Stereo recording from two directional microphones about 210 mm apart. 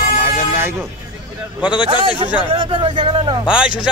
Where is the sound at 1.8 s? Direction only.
25° right (ahead or behind).